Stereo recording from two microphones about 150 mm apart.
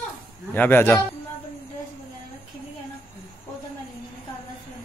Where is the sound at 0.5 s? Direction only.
15° left (ahead or behind).